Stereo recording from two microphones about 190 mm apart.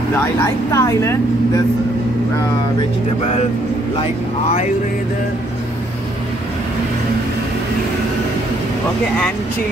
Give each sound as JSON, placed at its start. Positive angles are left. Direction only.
{"t": 0.1, "sound": "speech", "side_deg": 15}
{"t": 4.0, "sound": "speech", "side_deg": 35}